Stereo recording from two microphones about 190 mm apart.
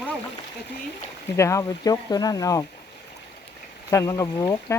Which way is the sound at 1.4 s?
15° left (ahead or behind).